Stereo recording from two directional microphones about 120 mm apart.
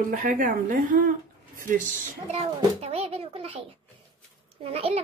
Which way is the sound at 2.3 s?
55° right (ahead or behind).